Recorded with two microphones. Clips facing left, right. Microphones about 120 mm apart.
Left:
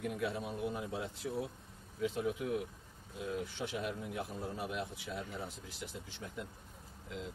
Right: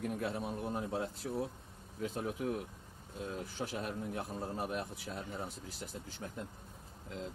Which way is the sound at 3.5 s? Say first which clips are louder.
Even; 40° right (ahead or behind).